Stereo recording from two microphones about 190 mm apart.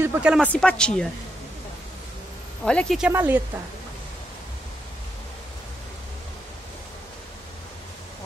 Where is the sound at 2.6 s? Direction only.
5° left (ahead or behind).